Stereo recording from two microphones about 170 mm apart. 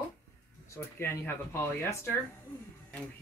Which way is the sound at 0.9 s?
15° left (ahead or behind).